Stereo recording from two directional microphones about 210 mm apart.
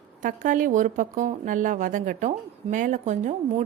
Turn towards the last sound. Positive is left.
turn(degrees=-35)  # may be behind; listen again after turning